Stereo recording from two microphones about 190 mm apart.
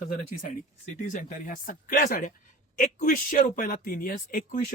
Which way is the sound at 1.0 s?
45° left (ahead or behind).